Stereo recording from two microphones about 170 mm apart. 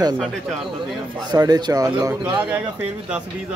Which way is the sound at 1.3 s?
20° right (ahead or behind).